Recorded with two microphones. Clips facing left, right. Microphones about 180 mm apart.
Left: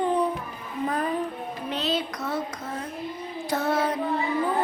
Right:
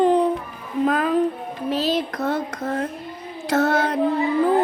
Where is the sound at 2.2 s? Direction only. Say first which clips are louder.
Right 6 dB; 60° right (ahead or behind).